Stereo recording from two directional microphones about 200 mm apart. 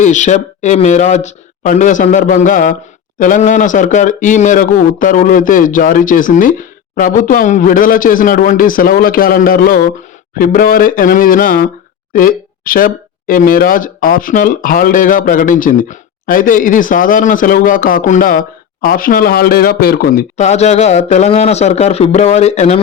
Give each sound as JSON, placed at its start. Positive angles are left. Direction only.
{"t": 0.0, "sound": "speech", "side_deg": 35}
{"t": 20.3, "sound": "speech", "side_deg": 35}